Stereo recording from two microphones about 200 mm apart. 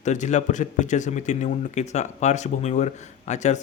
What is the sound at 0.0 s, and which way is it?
A man's voice, 35° left (ahead or behind).